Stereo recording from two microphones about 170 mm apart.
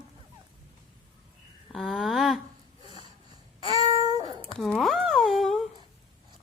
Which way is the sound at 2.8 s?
25° right (ahead or behind).